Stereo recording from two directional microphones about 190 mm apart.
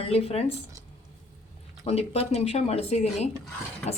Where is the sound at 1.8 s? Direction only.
35° left (ahead or behind).